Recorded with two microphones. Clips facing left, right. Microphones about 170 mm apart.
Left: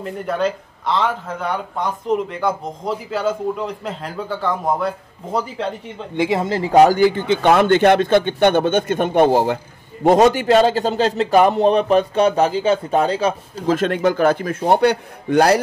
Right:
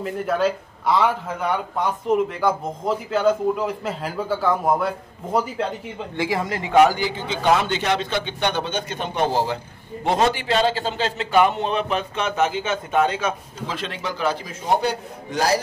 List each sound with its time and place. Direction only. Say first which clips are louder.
0.0 s a man's voice: even; centre (ahead or behind)
6.1 s a man's voice: left 6 dB; 25° left (ahead or behind)
13.7 s a man's voice: left 11 dB; 50° left (ahead or behind)